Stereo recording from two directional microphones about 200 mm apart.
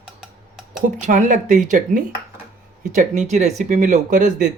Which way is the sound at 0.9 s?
35° right (ahead or behind).